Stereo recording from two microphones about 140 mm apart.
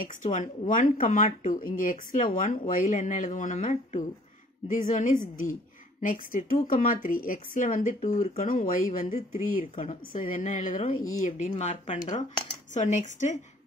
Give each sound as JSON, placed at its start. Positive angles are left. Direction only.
{"t": 0.0, "sound": "a woman's voice", "side_deg": 65}
{"t": 10.1, "sound": "speech", "side_deg": 75}